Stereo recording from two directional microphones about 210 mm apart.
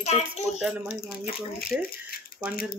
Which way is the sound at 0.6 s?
5° right (ahead or behind).